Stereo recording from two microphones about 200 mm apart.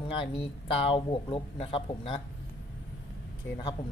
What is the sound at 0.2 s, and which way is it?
Speech, 25° left (ahead or behind).